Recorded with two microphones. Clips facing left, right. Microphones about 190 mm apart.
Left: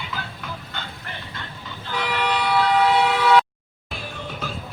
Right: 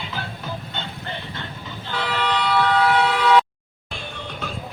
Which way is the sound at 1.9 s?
15° left (ahead or behind).